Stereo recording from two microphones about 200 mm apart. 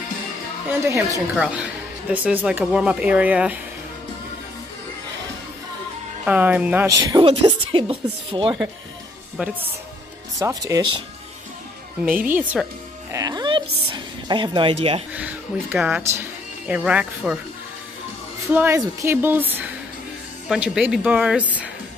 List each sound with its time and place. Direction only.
0.7 s speech: 15° right (ahead or behind)
6.2 s speech: 10° right (ahead or behind)
7.1 s speech: 20° right (ahead or behind)
9.4 s speech: 5° right (ahead or behind)
10.4 s speech: 15° right (ahead or behind)
12.3 s speech: 10° right (ahead or behind)
13.1 s music: 20° right (ahead or behind)
13.9 s speech: 25° right (ahead or behind)
15.1 s speech: 5° right (ahead or behind)
18.5 s speech: 10° right (ahead or behind)